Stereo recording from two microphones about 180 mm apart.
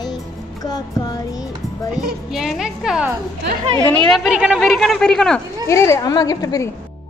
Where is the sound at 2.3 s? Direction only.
Centre (ahead or behind).